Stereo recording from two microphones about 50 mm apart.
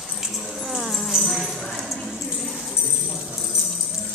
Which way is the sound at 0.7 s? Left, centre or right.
Centre.